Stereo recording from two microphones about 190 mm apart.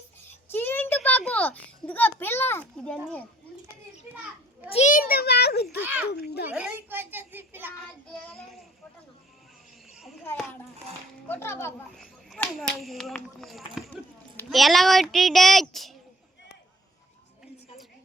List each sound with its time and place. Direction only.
0.5 s a child's voice: 10° left (ahead or behind)
4.7 s a child's voice: 40° left (ahead or behind); by 5.6 s 60° left (ahead or behind)
5.7 s a child's voice: 10° right (ahead or behind)
6.1 s a child's voice: 55° left (ahead or behind)
6.5 s a child's voice: 10° right (ahead or behind)
9.9 s a sound: centre (ahead or behind)
11.3 s a child's voice: 15° left (ahead or behind)
11.9 s speech: centre (ahead or behind)